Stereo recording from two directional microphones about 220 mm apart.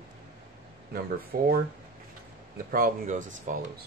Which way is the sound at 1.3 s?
40° right (ahead or behind).